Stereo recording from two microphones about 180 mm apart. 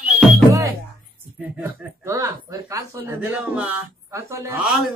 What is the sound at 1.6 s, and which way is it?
Speech, 15° right (ahead or behind).